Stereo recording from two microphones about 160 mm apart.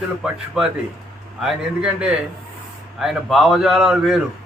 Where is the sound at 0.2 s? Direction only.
Centre (ahead or behind).